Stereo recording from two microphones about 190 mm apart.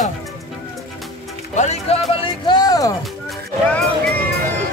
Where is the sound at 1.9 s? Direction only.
30° left (ahead or behind).